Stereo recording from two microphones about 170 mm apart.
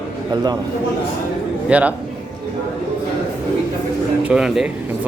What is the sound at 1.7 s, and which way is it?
Speech, 10° right (ahead or behind).